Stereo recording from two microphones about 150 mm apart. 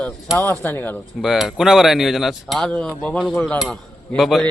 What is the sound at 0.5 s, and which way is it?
Cutlery, 10° left (ahead or behind).